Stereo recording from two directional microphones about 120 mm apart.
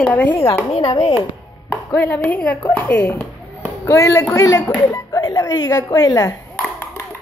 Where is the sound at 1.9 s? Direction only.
15° left (ahead or behind); by 6.3 s 30° left (ahead or behind).